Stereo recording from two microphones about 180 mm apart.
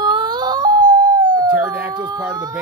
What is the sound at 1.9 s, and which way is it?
Speech, 25° right (ahead or behind).